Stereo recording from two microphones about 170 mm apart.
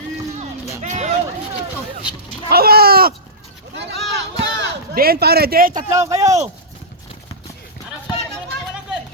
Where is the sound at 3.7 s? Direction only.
80° right; by 5.7 s 65° right (ahead or behind).